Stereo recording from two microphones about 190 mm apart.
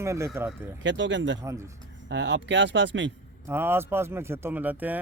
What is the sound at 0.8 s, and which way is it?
Speech, 70° right (ahead or behind).